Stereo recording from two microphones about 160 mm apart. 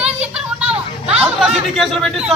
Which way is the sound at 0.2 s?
5° right (ahead or behind).